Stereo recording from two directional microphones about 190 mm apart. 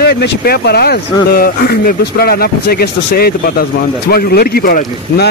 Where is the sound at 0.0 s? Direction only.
55° left (ahead or behind).